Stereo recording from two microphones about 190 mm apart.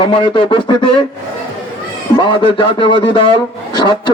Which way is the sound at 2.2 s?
25° left (ahead or behind).